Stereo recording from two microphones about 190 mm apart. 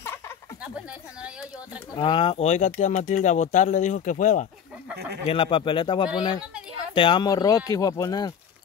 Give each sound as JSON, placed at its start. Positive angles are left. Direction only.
{"t": 2.0, "sound": "speech", "side_deg": 30}
{"t": 5.2, "sound": "speech", "side_deg": 30}